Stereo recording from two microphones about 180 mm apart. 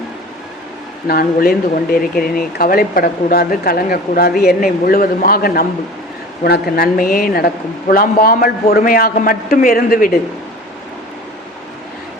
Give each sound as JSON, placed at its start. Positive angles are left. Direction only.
{"t": 1.0, "sound": "a man's voice", "side_deg": 55}